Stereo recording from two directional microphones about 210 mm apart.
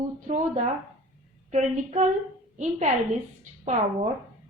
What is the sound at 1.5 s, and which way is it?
A woman's voice, 35° right (ahead or behind).